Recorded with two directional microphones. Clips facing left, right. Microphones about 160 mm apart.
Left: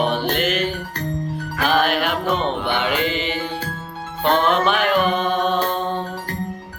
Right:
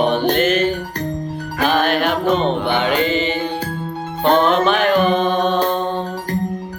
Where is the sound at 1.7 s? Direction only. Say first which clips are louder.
Right 2 dB; 10° left (ahead or behind).